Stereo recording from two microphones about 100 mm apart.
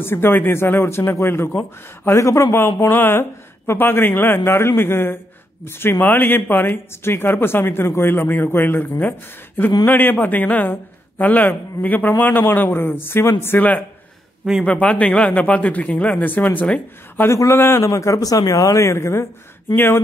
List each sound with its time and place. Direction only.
0.0 s speech: 25° left (ahead or behind)
17.3 s a man's voice: 30° left (ahead or behind)